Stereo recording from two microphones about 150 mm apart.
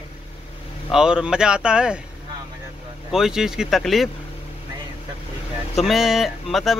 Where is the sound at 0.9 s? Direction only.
5° right (ahead or behind).